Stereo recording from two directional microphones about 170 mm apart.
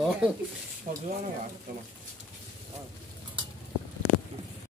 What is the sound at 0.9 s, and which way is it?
Speech, 40° right (ahead or behind).